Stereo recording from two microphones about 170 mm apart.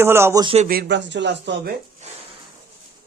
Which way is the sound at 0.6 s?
75° right (ahead or behind).